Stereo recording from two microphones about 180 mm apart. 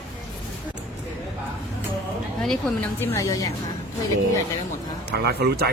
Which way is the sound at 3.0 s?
15° left (ahead or behind).